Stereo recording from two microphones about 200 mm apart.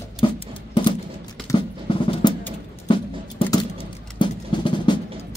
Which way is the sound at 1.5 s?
15° left (ahead or behind).